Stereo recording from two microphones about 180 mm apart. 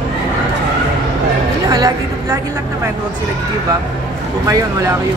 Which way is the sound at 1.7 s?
20° right (ahead or behind).